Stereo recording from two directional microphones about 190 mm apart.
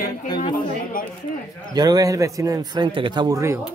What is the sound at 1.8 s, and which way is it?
A man's voice, 20° right (ahead or behind).